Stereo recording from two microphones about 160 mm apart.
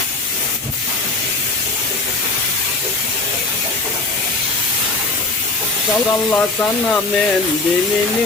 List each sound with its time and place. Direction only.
6.3 s speech: 10° left (ahead or behind)